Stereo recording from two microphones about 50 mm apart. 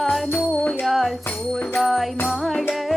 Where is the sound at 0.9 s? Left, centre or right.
Centre.